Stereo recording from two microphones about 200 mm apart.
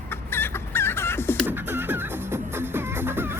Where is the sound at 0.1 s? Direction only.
10° left (ahead or behind).